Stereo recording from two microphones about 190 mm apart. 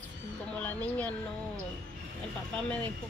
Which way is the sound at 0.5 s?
10° left (ahead or behind).